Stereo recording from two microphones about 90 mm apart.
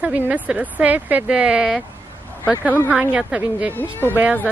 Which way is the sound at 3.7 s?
20° left (ahead or behind).